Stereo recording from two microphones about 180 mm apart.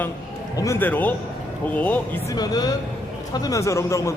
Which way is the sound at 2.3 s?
20° left (ahead or behind).